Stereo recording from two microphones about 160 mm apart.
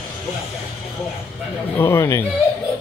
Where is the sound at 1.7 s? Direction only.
15° left (ahead or behind).